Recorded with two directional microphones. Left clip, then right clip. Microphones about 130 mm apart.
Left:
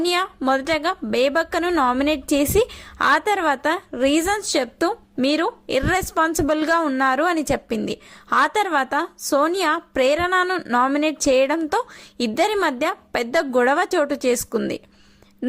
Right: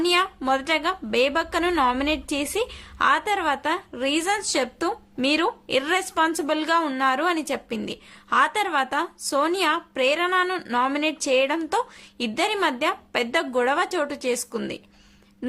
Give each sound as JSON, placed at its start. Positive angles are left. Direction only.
{"t": 0.0, "sound": "a woman's voice", "side_deg": 40}
{"t": 10.4, "sound": "a woman's voice", "side_deg": 30}